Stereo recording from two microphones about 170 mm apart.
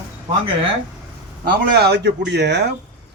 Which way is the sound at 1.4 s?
70° right (ahead or behind).